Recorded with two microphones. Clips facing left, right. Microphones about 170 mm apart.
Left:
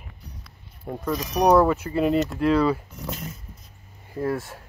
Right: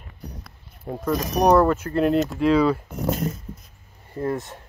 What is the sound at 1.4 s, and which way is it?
Speech, 5° left (ahead or behind).